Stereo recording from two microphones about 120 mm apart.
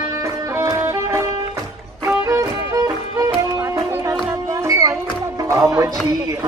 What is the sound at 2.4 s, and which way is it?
Music, 25° right (ahead or behind).